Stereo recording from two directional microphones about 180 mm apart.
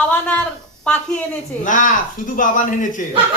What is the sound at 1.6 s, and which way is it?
Speech, 45° left (ahead or behind).